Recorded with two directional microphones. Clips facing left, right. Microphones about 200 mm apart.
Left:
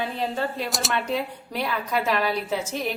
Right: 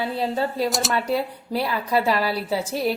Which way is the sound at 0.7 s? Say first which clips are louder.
Right 4 dB; centre (ahead or behind).